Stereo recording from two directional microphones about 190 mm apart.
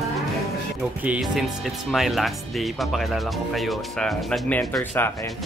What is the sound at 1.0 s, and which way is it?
Speech, 5° right (ahead or behind).